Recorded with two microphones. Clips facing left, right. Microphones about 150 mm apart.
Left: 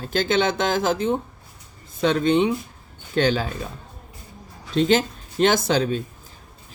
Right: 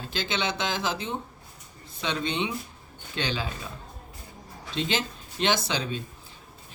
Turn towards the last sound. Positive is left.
turn(degrees=50)  # may be behind; listen again after turning